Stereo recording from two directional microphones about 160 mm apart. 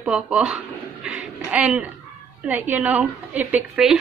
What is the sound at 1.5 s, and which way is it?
A woman's voice, 10° right (ahead or behind).